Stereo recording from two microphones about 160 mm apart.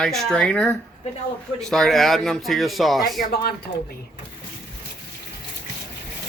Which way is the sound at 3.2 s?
75° left (ahead or behind).